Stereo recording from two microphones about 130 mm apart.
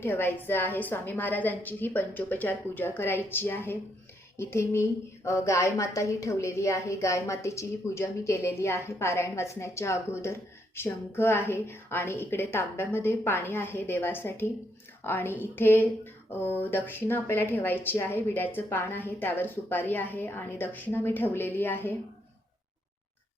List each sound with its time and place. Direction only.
0.0 s a woman's voice: 15° left (ahead or behind)